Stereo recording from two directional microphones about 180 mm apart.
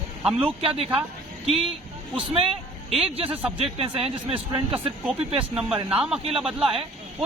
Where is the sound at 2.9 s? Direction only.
30° right (ahead or behind).